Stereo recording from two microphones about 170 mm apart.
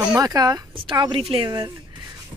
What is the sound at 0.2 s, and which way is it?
Speech, 20° right (ahead or behind).